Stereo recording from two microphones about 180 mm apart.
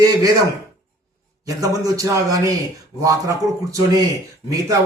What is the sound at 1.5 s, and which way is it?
A man's voice, 20° right (ahead or behind).